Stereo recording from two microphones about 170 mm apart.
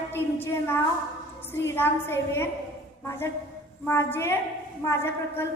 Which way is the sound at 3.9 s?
15° left (ahead or behind).